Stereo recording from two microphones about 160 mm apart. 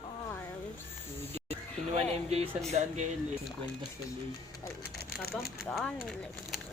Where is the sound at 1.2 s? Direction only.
15° left (ahead or behind).